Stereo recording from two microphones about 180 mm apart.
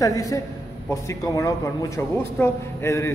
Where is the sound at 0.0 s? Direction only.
20° left (ahead or behind).